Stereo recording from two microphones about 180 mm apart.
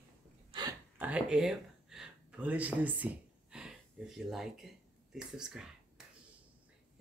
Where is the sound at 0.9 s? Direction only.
5° right (ahead or behind).